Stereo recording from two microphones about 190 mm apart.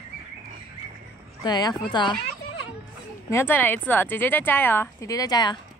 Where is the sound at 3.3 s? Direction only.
10° left (ahead or behind).